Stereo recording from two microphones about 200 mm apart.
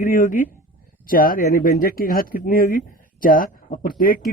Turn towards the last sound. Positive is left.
turn(degrees=45)  # may be behind; listen again after turning